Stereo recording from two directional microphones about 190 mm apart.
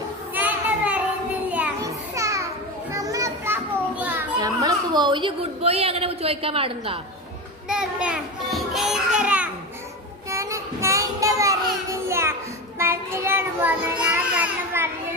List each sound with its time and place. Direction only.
0.3 s child singing: 10° right (ahead or behind)
1.8 s children playing: 15° right (ahead or behind)
4.4 s a sound: 20° right (ahead or behind)
7.7 s children playing: 5° right (ahead or behind)
10.2 s child singing: 15° right (ahead or behind)
11.9 s music: 15° right (ahead or behind)
12.8 s child singing: 15° right (ahead or behind)